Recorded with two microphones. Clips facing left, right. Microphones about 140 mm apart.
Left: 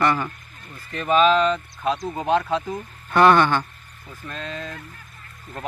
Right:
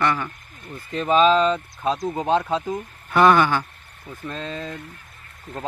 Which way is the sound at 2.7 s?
5° right (ahead or behind).